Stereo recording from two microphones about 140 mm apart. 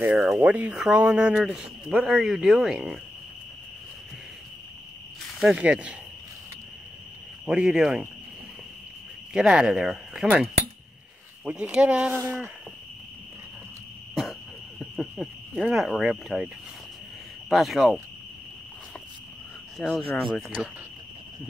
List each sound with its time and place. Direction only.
0.0 s speech: 15° right (ahead or behind); by 3.0 s centre (ahead or behind)
5.4 s speech: 5° right (ahead or behind)
7.4 s speech: 5° right (ahead or behind)
9.3 s speech: 5° right (ahead or behind)
14.8 s a sound: centre (ahead or behind)
15.6 s speech: centre (ahead or behind)
17.5 s speech: centre (ahead or behind)
19.8 s speech: 5° left (ahead or behind)